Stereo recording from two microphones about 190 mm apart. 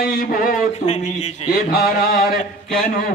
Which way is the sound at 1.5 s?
50° left (ahead or behind).